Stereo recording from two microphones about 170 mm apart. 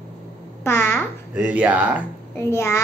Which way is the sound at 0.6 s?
10° left (ahead or behind).